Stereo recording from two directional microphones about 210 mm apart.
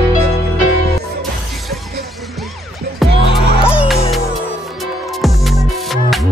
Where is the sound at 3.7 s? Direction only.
5° right (ahead or behind).